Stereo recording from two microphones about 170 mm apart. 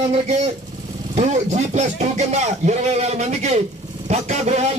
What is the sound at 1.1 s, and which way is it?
A man's voice, 40° right (ahead or behind).